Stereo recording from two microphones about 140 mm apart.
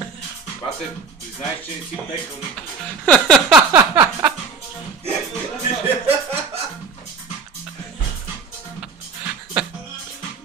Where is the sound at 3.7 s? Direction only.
15° right (ahead or behind).